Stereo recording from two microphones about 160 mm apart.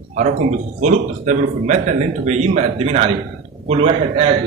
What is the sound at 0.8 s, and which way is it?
A man's voice, 50° right (ahead or behind).